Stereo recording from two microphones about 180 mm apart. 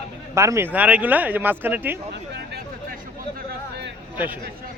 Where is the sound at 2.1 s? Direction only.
70° right (ahead or behind).